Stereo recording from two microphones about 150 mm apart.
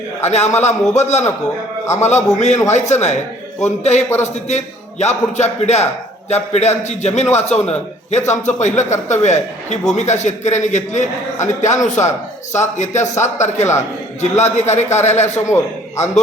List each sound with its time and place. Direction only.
0.2 s a man's voice: 45° left (ahead or behind)